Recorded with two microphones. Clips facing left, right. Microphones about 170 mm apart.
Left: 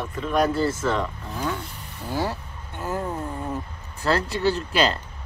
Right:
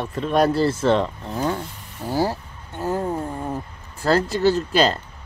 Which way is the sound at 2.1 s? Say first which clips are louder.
Right 5 dB; 35° right (ahead or behind).